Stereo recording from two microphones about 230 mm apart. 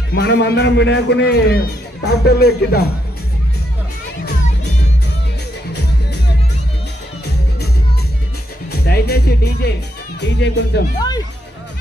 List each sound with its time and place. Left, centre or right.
0.1 s a man's voice: left
8.8 s a man's voice: left
11.0 s speech: centre